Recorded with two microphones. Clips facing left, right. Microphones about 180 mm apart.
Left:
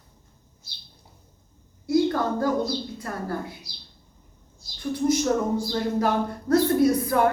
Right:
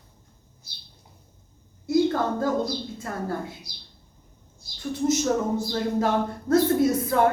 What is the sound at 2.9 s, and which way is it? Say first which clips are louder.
Speech: even; 25° right (ahead or behind).